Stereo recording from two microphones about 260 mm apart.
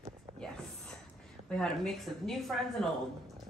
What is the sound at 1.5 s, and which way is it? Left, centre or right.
A man's voice, centre.